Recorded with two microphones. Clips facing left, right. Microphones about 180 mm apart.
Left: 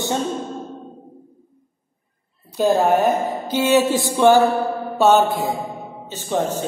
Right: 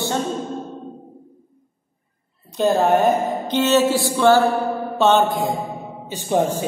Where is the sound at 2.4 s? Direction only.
10° left (ahead or behind).